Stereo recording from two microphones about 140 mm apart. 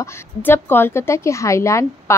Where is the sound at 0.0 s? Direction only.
15° left (ahead or behind).